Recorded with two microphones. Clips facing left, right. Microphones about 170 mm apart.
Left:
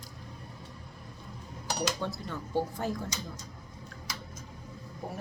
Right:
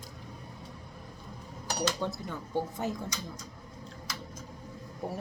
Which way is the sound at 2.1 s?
20° right (ahead or behind).